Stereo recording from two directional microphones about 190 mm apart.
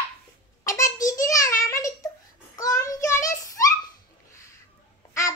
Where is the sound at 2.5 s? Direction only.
15° left (ahead or behind).